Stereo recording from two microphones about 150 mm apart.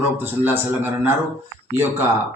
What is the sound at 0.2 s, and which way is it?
A man's voice, 15° right (ahead or behind).